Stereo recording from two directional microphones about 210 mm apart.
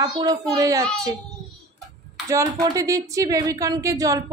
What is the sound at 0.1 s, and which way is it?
Speech, 20° right (ahead or behind).